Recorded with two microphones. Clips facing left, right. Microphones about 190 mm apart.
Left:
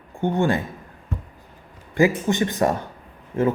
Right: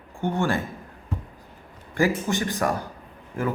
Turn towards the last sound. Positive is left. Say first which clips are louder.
# left 7 dB
turn(degrees=25)  # may be behind; listen again after turning